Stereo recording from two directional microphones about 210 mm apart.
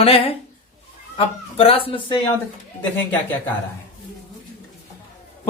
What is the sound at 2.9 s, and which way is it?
Speech, 10° left (ahead or behind).